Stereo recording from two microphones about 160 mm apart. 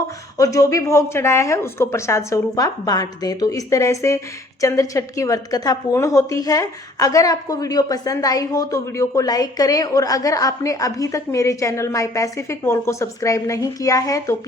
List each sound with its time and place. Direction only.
0.3 s a woman's voice: 20° left (ahead or behind)